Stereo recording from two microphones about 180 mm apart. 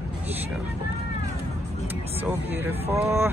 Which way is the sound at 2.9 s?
15° right (ahead or behind).